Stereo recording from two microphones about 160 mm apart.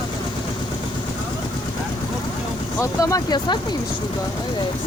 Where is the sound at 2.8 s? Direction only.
20° left (ahead or behind).